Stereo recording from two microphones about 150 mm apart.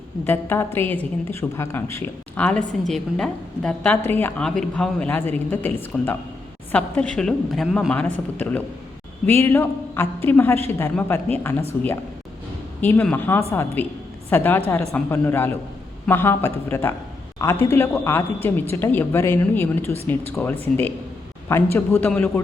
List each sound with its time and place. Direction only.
0.3 s a woman's voice: 15° left (ahead or behind)
12.8 s a woman's voice: 10° left (ahead or behind)